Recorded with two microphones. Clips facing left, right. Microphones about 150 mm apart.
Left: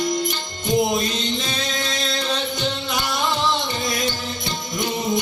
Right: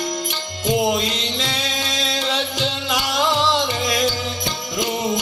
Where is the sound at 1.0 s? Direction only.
90° right.